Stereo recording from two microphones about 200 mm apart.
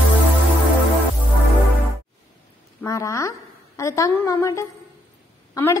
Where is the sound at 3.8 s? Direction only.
15° left (ahead or behind).